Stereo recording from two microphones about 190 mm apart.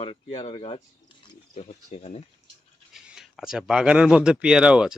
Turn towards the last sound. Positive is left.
turn(degrees=-5)  # may be behind; listen again after turning